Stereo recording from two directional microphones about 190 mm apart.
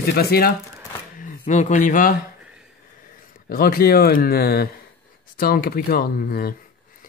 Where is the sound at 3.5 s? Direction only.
50° left (ahead or behind).